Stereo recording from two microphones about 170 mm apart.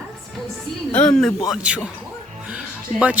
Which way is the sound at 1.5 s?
5° right (ahead or behind).